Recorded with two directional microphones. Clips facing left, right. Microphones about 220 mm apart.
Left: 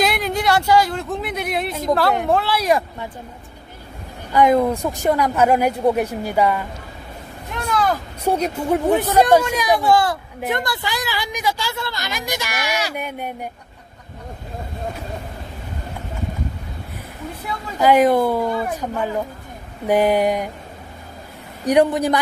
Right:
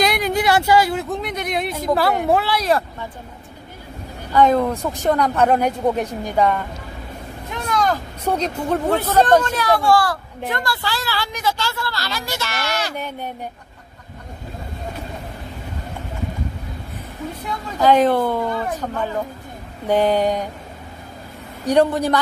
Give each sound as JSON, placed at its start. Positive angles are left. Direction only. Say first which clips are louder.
{"t": 0.0, "sound": "speech", "louder": "right 1 dB", "side_deg": 0}
{"t": 4.3, "sound": "a woman's voice", "louder": "left 1 dB", "side_deg": 10}
{"t": 17.7, "sound": "a woman's voice", "louder": "left 1 dB", "side_deg": 10}
{"t": 21.6, "sound": "a woman's voice", "louder": "left 1 dB", "side_deg": 15}